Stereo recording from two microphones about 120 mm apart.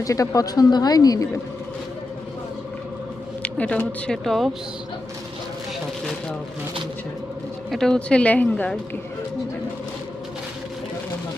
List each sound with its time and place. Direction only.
0.0 s speech: 30° left (ahead or behind)
3.4 s speech: 10° left (ahead or behind)
7.7 s speech: 5° left (ahead or behind)